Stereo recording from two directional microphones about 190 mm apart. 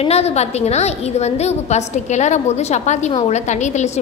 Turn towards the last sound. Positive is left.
turn(degrees=35)  # may be behind; listen again after turning